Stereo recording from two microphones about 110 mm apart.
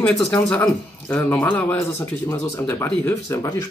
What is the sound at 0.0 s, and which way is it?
Speech, 10° left (ahead or behind).